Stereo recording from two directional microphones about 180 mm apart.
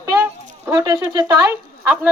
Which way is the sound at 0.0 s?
15° right (ahead or behind).